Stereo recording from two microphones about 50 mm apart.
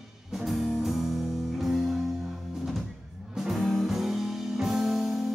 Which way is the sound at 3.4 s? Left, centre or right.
Centre.